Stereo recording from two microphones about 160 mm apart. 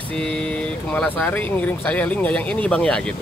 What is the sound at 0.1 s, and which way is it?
A man's voice, 5° left (ahead or behind).